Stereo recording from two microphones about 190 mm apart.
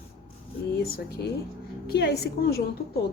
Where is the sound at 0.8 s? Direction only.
55° left (ahead or behind).